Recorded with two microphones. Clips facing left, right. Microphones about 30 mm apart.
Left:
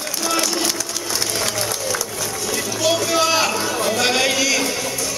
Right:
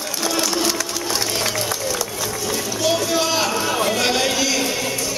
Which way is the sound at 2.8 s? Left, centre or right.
Centre.